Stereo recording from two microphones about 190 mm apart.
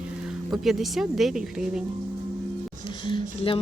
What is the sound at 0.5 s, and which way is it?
Speech, centre (ahead or behind).